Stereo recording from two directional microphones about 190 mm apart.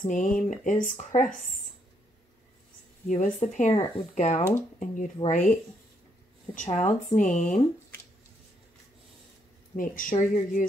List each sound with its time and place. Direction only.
0.0 s speech: 45° left (ahead or behind)
3.1 s speech: 40° left (ahead or behind)
9.8 s speech: 45° left (ahead or behind)